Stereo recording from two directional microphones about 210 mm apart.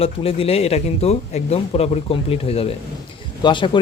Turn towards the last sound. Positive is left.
turn(degrees=25)  # may be behind; listen again after turning